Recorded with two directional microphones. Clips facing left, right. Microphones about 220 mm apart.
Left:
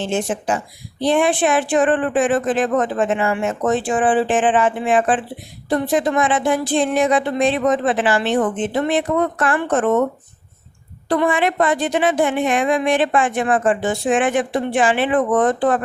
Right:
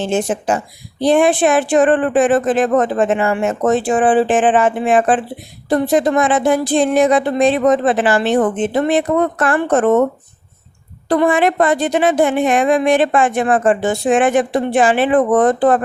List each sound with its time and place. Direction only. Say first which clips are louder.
0.0 s speech: right 4 dB; 45° right (ahead or behind)
9.8 s speech: right 4 dB; 55° right (ahead or behind)
11.1 s speech: right 4 dB; 40° right (ahead or behind)